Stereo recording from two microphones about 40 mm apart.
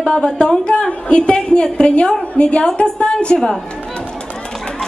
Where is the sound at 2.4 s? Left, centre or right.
Left.